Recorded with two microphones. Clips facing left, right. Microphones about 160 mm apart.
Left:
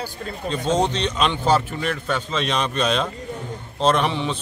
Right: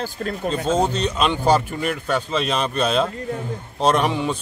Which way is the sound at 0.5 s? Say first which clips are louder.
Even; 10° right (ahead or behind).